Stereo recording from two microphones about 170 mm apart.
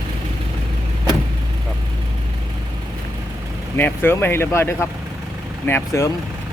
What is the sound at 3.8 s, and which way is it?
Speech, 10° left (ahead or behind).